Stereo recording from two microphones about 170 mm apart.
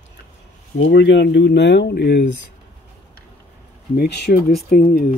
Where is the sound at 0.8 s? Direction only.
90° left.